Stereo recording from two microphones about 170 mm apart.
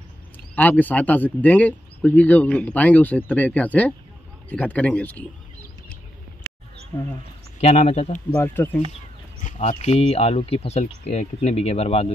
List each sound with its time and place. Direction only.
0.6 s speech: 10° left (ahead or behind)
6.9 s speech: 15° left (ahead or behind)
7.6 s speech: 40° left (ahead or behind)
8.4 s speech: 10° left (ahead or behind)
9.4 s speech: 45° left (ahead or behind)